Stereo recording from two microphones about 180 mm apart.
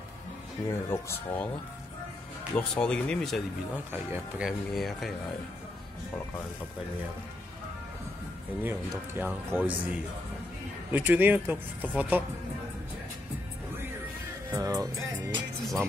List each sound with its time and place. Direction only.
0.7 s speech: 15° left (ahead or behind)
2.5 s speech: 5° left (ahead or behind)
3.9 s speech: 10° right (ahead or behind)
8.6 s speech: 10° right (ahead or behind)
10.9 s speech: 10° right (ahead or behind)
14.5 s music: 20° right (ahead or behind)
15.6 s speech: centre (ahead or behind)